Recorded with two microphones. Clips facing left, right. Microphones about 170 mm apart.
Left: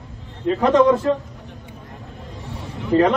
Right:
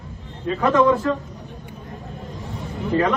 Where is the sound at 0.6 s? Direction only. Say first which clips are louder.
Left 2 dB; 25° left (ahead or behind).